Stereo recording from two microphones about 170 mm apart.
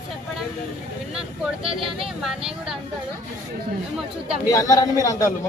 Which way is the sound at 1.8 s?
Centre (ahead or behind).